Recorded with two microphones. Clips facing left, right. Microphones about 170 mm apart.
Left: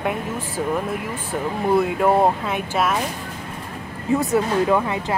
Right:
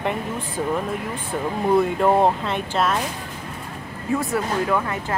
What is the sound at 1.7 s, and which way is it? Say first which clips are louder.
Speech: even; 5° left (ahead or behind).